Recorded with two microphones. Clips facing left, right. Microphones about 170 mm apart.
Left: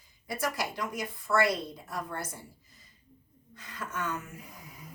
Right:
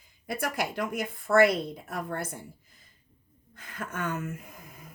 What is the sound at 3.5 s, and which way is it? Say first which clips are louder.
Speech: right 1 dB; 55° right (ahead or behind).